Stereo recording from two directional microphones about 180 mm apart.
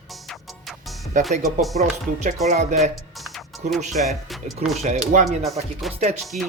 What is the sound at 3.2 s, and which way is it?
Music, centre (ahead or behind).